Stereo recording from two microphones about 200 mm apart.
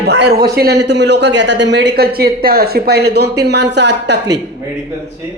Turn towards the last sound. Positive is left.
turn(degrees=-60)  # may be behind; listen again after turning